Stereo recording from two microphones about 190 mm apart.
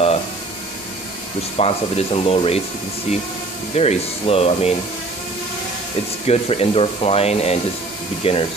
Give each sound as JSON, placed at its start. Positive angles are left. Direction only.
{"t": 1.6, "sound": "speech", "side_deg": 30}
{"t": 3.7, "sound": "speech", "side_deg": 35}
{"t": 6.2, "sound": "speech", "side_deg": 30}